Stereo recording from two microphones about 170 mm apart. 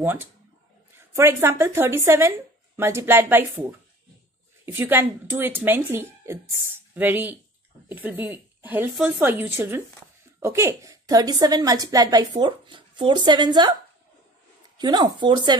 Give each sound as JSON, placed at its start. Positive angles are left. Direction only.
{"t": 0.0, "sound": "speech", "side_deg": -10}
{"t": 4.7, "sound": "a woman's voice", "side_deg": -10}
{"t": 14.8, "sound": "a woman's voice", "side_deg": -25}